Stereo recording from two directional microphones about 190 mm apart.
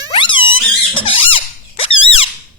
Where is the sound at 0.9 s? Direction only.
25° left (ahead or behind).